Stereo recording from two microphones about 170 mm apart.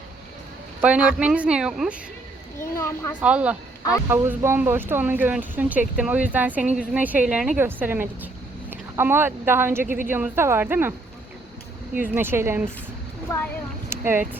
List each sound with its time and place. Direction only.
0.8 s speech: 5° right (ahead or behind)
2.6 s speech: 15° left (ahead or behind)
3.2 s speech: 5° right (ahead or behind)
12.0 s speech: 15° right (ahead or behind)
13.9 s a sound: 15° right (ahead or behind)